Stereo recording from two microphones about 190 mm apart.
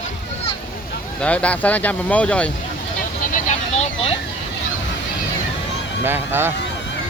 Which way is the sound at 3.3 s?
35° left (ahead or behind).